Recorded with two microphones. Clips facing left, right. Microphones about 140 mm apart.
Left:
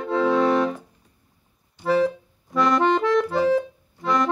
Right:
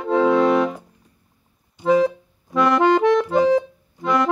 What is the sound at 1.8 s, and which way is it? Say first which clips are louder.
Music: right 4 dB; 15° right (ahead or behind).